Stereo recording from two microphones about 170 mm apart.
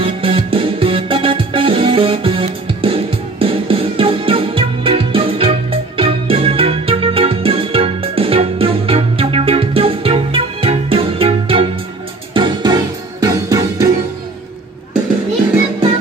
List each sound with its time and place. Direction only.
0.0 s music: 35° right (ahead or behind)